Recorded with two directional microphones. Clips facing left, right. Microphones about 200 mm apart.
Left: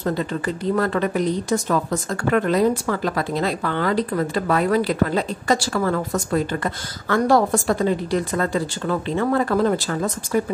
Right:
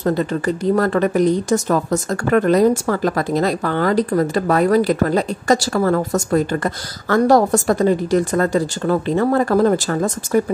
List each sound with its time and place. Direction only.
0.0 s speech: 45° right (ahead or behind)